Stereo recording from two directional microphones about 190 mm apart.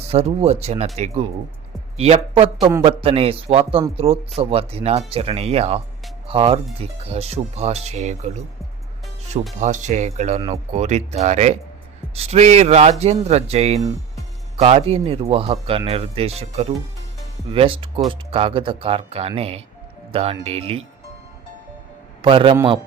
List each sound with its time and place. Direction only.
0.1 s speech: 35° right (ahead or behind)
9.6 s speech: 40° right (ahead or behind)
22.2 s speech: 25° right (ahead or behind)